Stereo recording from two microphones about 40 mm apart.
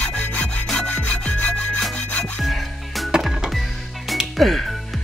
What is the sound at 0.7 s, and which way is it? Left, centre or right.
Sawing, left.